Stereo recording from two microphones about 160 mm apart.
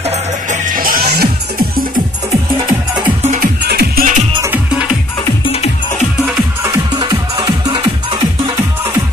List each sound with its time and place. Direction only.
0.5 s music: 60° right (ahead or behind); by 1.9 s 75° right (ahead or behind)
3.3 s music: 85° right; by 4.2 s 65° right (ahead or behind)
4.5 s music: 5° right (ahead or behind)
5.4 s music: 40° left (ahead or behind)
6.6 s music: 25° right (ahead or behind)